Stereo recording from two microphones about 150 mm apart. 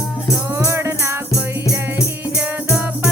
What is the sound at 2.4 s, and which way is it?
Music, 10° right (ahead or behind).